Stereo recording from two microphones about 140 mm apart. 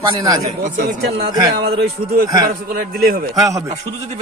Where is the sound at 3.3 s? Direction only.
25° right (ahead or behind).